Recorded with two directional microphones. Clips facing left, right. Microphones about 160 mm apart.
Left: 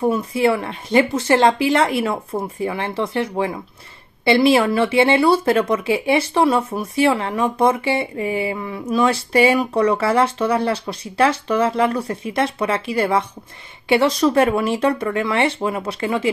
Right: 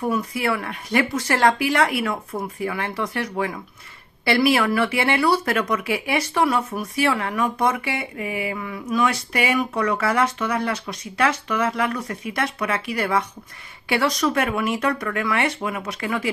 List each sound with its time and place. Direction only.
0.0 s speech: 25° left (ahead or behind)